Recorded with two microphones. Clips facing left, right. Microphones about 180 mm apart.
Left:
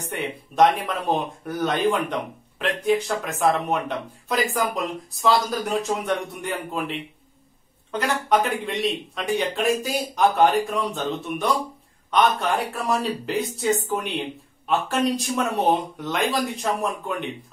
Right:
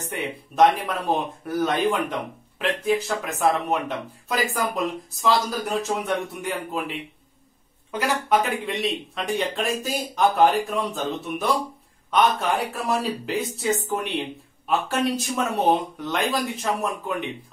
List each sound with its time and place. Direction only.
0.1 s speech: centre (ahead or behind)
8.0 s speech: 5° right (ahead or behind)